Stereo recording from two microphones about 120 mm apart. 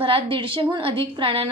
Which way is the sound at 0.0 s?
45° right (ahead or behind).